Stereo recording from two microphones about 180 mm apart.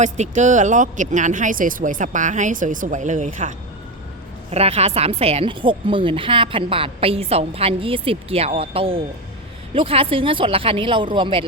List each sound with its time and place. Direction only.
0.0 s speech: 40° right (ahead or behind)
4.5 s a woman's voice: 35° right (ahead or behind)